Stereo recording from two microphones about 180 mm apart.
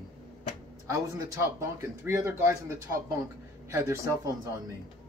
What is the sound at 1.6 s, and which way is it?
Speech, 15° right (ahead or behind).